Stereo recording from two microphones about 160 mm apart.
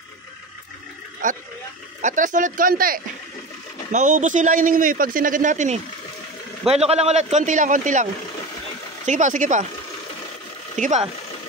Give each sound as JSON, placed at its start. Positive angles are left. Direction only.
{"t": 1.2, "sound": "a man's voice", "side_deg": -55}
{"t": 3.9, "sound": "a man's voice", "side_deg": -50}
{"t": 10.8, "sound": "a man's voice", "side_deg": -50}